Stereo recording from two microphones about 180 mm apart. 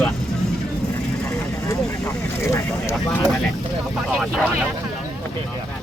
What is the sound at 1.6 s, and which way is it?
Vehicle, 15° left (ahead or behind).